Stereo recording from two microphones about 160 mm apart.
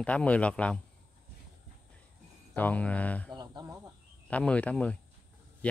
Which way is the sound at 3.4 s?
25° right (ahead or behind).